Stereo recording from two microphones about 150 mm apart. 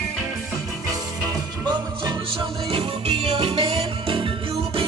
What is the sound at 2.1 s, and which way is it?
Music, 35° right (ahead or behind).